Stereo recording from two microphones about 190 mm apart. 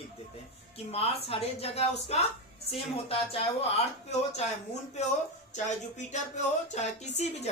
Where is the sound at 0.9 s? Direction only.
30° left (ahead or behind).